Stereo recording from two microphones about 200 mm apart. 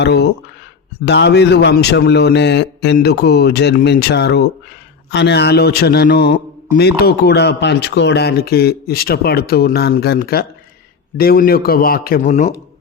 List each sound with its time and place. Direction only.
0.0 s a man's voice: 60° left (ahead or behind); by 12.5 s 40° left (ahead or behind)